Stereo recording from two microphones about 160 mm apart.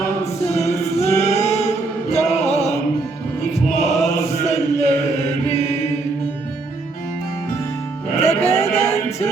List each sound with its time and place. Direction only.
1.0 s music: 40° left (ahead or behind)
3.5 s chant: 45° left (ahead or behind)
5.5 s mantra: 40° left (ahead or behind)
8.2 s music: 40° left (ahead or behind)
8.9 s music: 15° left (ahead or behind)